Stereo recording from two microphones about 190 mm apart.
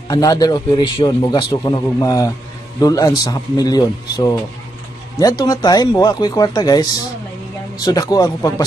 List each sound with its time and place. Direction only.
0.1 s a man's voice: 20° left (ahead or behind)